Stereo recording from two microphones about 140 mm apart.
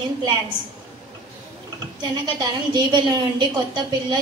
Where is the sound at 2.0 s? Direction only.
30° right (ahead or behind).